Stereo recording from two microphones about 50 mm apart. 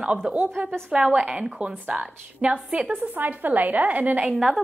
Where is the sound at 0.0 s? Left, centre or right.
Centre.